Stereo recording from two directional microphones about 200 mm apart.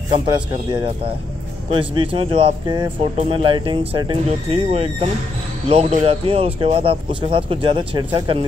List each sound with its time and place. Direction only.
0.3 s speech: 20° right (ahead or behind)